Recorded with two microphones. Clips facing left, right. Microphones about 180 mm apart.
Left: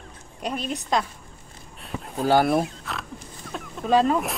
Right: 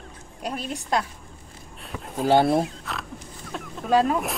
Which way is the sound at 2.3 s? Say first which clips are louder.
Right 1 dB; 25° right (ahead or behind).